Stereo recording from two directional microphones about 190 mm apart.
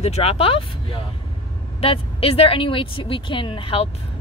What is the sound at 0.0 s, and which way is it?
Speech, 35° left (ahead or behind).